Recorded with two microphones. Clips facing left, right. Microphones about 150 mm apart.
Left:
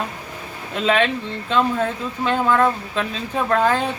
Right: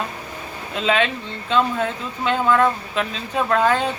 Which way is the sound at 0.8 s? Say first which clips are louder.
Left 2 dB; 40° left (ahead or behind).